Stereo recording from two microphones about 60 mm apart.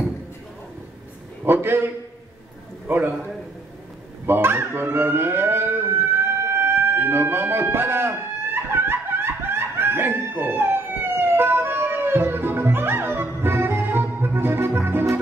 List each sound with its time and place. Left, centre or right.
1.4 s a man's voice: right
2.9 s a man's voice: right
4.3 s music: right